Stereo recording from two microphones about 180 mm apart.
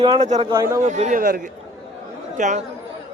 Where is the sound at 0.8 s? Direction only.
40° right (ahead or behind).